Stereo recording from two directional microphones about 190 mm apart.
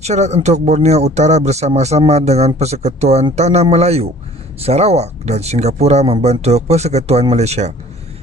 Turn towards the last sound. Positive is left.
turn(degrees=-35)  # may be behind; listen again after turning